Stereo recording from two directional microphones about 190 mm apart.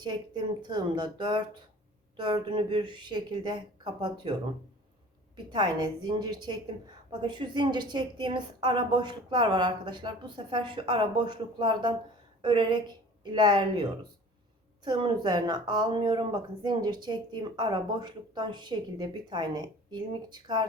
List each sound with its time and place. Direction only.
0.0 s a woman's voice: 25° right (ahead or behind)
5.5 s a woman's voice: 20° right (ahead or behind)